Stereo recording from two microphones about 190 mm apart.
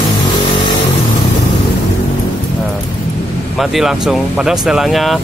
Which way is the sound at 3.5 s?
Centre (ahead or behind).